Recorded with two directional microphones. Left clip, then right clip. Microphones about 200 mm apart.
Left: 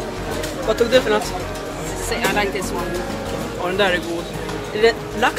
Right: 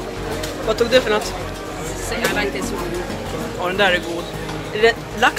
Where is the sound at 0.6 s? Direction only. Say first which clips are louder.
Even; centre (ahead or behind).